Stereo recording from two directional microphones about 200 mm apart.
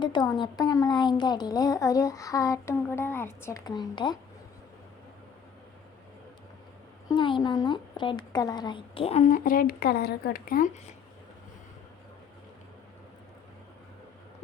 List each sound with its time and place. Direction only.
0.0 s a woman's voice: 25° left (ahead or behind)
7.1 s a woman's voice: 25° left (ahead or behind); by 10.7 s 45° left (ahead or behind)